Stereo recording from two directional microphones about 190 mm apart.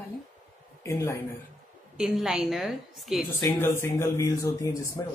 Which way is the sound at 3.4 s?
15° left (ahead or behind).